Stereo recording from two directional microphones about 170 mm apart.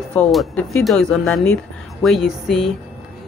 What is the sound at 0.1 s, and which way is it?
Speech, centre (ahead or behind).